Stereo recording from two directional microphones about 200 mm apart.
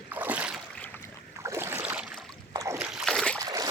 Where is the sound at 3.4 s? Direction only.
15° right (ahead or behind).